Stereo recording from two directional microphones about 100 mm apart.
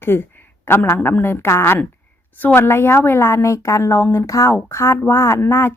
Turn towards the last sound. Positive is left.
turn(degrees=20)  # may be behind; listen again after turning